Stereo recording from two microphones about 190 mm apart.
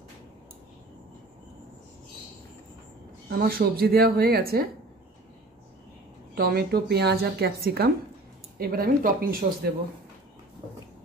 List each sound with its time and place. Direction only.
3.3 s a woman's voice: 50° right (ahead or behind)
6.3 s a woman's voice: 55° right (ahead or behind)